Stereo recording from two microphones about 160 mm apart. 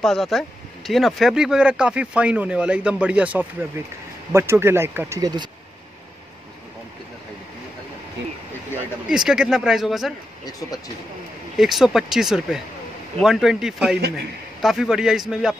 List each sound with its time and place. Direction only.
0.0 s speech: centre (ahead or behind); by 5.5 s 25° right (ahead or behind)
9.1 s speech: 5° right (ahead or behind)
11.5 s speech: centre (ahead or behind)